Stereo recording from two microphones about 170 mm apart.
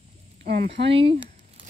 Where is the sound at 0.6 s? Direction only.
90° right.